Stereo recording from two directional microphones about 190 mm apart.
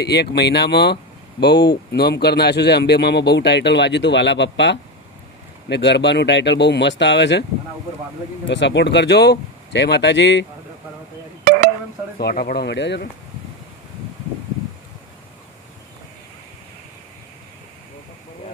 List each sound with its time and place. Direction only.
0.0 s speech: 60° left (ahead or behind)
8.5 s speech: 70° left (ahead or behind)
12.2 s speech: 55° left (ahead or behind)